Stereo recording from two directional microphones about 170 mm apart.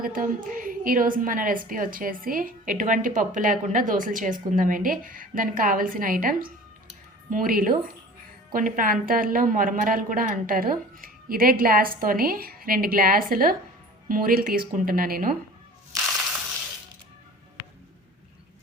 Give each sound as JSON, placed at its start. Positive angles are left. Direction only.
{"t": 0.0, "sound": "a woman's voice", "side_deg": -55}